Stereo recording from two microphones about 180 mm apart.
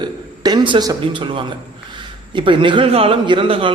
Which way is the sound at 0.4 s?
25° right (ahead or behind).